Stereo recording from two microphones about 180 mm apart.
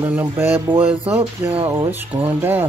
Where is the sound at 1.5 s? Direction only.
30° right (ahead or behind).